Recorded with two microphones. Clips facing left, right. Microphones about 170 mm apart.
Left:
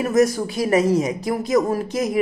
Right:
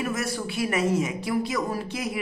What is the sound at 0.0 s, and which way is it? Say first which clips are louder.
Speech: left 11 dB; 40° left (ahead or behind).